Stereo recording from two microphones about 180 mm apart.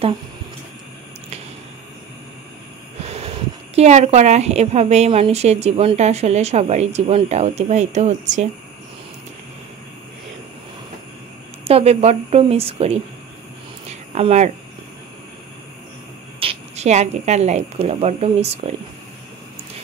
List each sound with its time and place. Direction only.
3.0 s snort: 35° right (ahead or behind)
3.7 s a woman's voice: 40° right (ahead or behind)
11.6 s a woman's voice: 35° right (ahead or behind)
14.1 s a woman's voice: 35° right (ahead or behind)
16.3 s speech: 35° right (ahead or behind)